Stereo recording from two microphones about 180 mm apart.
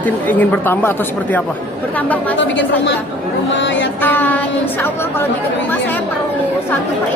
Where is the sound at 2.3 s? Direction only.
90° left.